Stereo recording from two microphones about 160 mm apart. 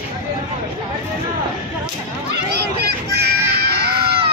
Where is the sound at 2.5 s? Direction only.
85° right.